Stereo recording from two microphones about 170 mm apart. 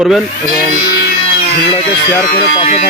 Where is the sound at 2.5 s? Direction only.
35° left (ahead or behind).